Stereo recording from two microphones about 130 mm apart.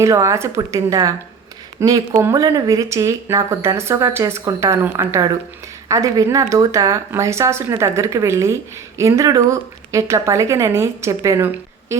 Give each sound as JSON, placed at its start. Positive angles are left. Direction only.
{"t": 0.0, "sound": "speech", "side_deg": -25}